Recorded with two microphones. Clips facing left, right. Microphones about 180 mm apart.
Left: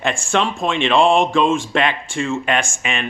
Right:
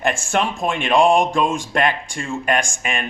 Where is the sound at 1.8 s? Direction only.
45° right (ahead or behind).